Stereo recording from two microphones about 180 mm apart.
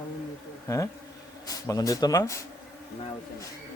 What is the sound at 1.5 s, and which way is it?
Speech, 20° left (ahead or behind).